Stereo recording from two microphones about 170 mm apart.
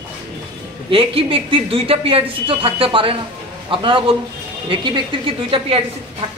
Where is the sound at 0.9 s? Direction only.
30° right (ahead or behind).